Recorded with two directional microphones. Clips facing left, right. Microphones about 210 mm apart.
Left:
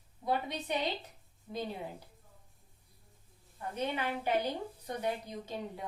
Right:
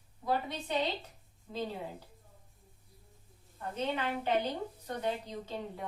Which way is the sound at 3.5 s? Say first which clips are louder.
Right 1 dB; 15° left (ahead or behind).